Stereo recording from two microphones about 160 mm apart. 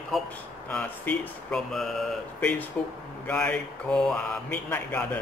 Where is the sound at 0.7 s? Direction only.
10° left (ahead or behind).